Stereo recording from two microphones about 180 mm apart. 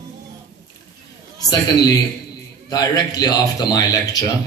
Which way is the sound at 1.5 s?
20° left (ahead or behind).